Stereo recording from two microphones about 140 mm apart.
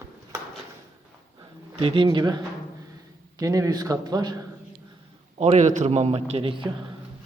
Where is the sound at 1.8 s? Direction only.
40° right (ahead or behind).